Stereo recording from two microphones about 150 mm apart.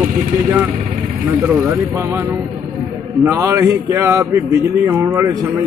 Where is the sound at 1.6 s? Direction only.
20° right (ahead or behind).